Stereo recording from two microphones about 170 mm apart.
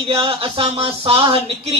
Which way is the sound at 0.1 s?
35° right (ahead or behind).